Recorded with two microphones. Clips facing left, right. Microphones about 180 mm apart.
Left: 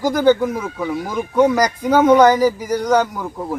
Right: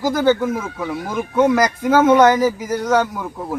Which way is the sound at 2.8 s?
10° left (ahead or behind).